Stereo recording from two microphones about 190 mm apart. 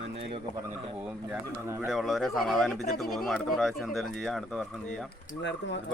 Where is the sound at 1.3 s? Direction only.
15° right (ahead or behind).